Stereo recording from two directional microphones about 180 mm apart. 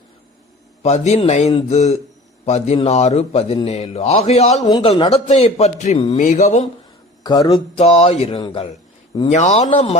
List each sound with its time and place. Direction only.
0.8 s a man's voice: 35° left (ahead or behind)
7.3 s a man's voice: 25° left (ahead or behind)